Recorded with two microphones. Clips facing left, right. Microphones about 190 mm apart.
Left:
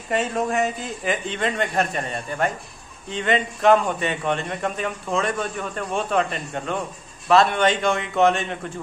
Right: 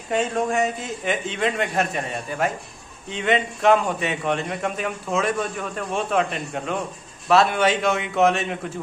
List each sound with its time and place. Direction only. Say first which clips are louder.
0.1 s a man's voice: right 1 dB; centre (ahead or behind)